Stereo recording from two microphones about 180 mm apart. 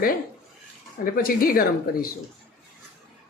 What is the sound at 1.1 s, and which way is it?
Speech, 55° left (ahead or behind).